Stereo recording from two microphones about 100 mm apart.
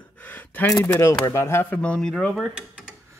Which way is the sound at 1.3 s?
25° left (ahead or behind).